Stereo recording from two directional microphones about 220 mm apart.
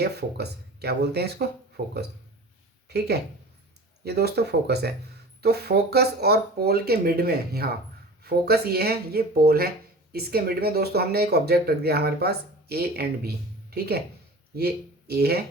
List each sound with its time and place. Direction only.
0.0 s speech: 50° right (ahead or behind)
4.0 s speech: 45° right (ahead or behind)